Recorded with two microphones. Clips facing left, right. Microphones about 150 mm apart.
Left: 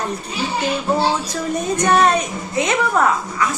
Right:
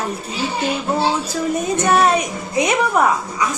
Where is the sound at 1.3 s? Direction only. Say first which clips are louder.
Right 2 dB; 5° right (ahead or behind).